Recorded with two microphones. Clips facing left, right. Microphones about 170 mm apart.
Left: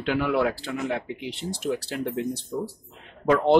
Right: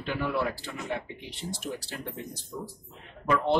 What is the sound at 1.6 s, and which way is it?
A man's voice, 75° left (ahead or behind).